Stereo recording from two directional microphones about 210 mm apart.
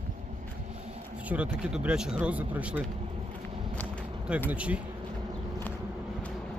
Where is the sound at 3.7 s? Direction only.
5° left (ahead or behind).